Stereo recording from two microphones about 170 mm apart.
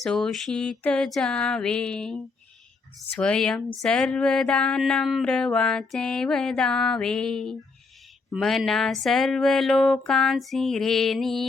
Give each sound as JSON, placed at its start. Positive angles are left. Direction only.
{"t": 0.0, "sound": "speech", "side_deg": 5}